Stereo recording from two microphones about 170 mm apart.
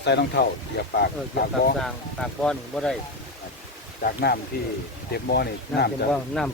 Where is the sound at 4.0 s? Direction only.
65° left (ahead or behind).